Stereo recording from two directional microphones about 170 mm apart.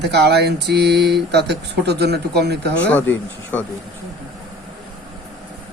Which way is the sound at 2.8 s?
10° left (ahead or behind).